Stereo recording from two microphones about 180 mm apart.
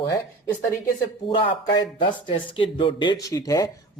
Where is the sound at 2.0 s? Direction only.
30° left (ahead or behind).